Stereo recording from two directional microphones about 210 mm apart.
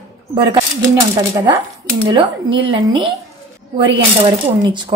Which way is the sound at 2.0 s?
20° right (ahead or behind).